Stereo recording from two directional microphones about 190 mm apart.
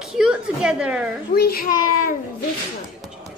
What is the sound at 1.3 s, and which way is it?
Speech, 55° left (ahead or behind).